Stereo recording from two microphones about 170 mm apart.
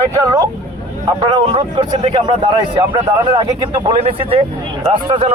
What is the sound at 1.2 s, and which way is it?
Speech, 30° right (ahead or behind).